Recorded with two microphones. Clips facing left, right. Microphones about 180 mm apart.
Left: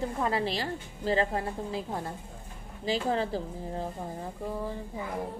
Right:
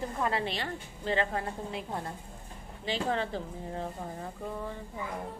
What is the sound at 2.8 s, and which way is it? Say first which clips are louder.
A woman's voice: left 3 dB; 35° left (ahead or behind).